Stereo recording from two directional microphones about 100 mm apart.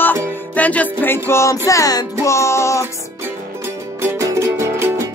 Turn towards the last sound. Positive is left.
turn(degrees=-30)  # may be behind; listen again after turning